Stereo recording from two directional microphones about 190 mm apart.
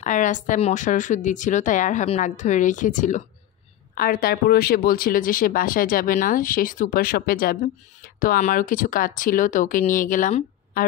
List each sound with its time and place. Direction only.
0.0 s a woman's voice: 40° left (ahead or behind)
3.9 s speech: 50° left (ahead or behind)